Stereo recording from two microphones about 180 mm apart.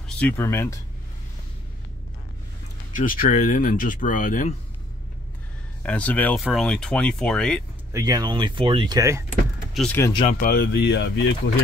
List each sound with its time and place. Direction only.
0.0 s speech: 10° left (ahead or behind)
3.0 s speech: 50° left (ahead or behind)
5.8 s speech: 10° left (ahead or behind)
7.9 s speech: 20° right (ahead or behind)
9.8 s speech: 10° left (ahead or behind)
10.4 s speech: 55° left (ahead or behind); by 11.5 s 75° left (ahead or behind)